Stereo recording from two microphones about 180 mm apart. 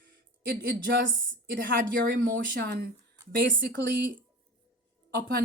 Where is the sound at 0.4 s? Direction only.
70° right (ahead or behind).